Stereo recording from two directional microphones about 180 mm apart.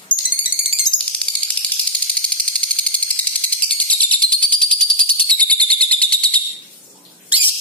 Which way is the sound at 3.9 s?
10° left (ahead or behind).